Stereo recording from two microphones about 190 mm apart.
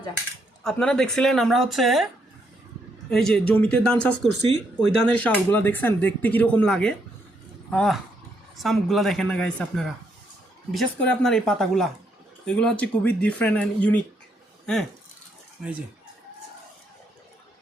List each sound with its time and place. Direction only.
0.6 s speech: 5° left (ahead or behind)
3.1 s speech: 5° left (ahead or behind)
15.6 s speech: centre (ahead or behind)